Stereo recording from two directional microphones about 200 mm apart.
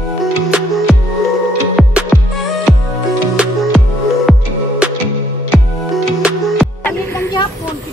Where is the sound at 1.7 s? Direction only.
5° right (ahead or behind).